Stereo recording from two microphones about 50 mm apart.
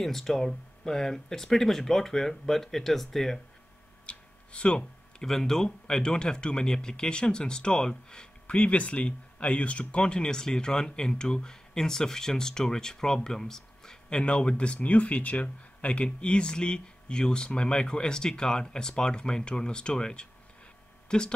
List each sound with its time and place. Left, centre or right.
0.0 s speech: centre
4.0 s a sound: left
5.2 s speech: centre
14.2 s speech: left